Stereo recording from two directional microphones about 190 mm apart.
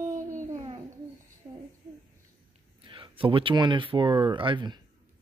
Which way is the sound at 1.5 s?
25° right (ahead or behind).